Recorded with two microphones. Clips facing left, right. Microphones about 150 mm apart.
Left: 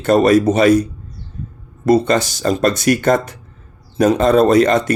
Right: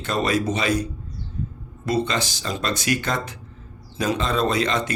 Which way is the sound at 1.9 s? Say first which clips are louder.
Left 10 dB; 45° left (ahead or behind).